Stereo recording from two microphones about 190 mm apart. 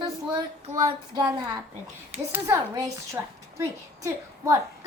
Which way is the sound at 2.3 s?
15° right (ahead or behind).